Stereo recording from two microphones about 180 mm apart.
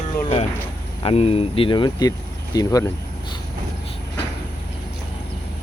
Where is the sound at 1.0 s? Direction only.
35° left (ahead or behind).